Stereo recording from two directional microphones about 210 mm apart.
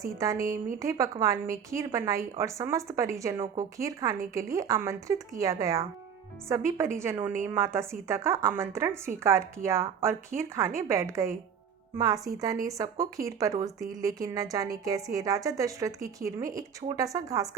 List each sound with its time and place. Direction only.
0.0 s a woman's voice: 15° right (ahead or behind)
3.3 s a woman's voice: 25° right (ahead or behind)